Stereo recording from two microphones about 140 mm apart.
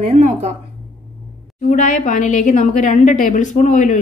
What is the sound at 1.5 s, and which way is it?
A woman's voice, 65° left (ahead or behind).